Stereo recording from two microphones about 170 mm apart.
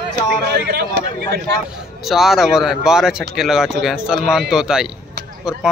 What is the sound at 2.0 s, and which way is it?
Speech, centre (ahead or behind).